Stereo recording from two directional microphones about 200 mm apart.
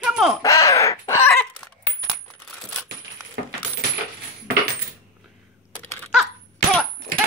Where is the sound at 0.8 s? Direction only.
15° left (ahead or behind).